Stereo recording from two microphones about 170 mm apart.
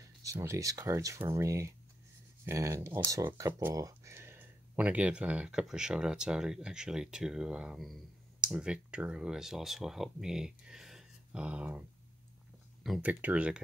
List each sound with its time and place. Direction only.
0.2 s speech: 15° right (ahead or behind)
12.8 s speech: 5° right (ahead or behind)